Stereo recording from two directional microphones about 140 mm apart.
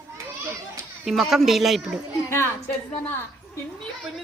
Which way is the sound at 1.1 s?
Centre (ahead or behind).